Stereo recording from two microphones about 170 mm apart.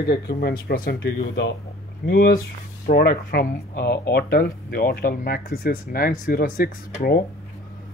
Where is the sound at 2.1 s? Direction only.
55° left (ahead or behind).